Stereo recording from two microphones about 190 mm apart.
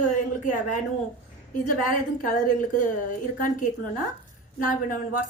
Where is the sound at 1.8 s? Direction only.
45° left (ahead or behind).